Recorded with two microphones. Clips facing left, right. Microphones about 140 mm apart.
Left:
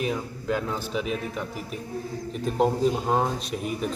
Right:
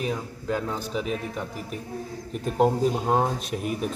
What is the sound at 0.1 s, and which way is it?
Speech, centre (ahead or behind).